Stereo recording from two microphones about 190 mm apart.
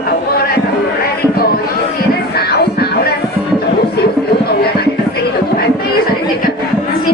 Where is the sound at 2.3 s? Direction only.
55° left (ahead or behind).